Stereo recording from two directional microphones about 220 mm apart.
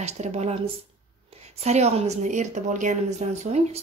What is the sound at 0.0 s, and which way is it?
A woman's voice, 30° right (ahead or behind).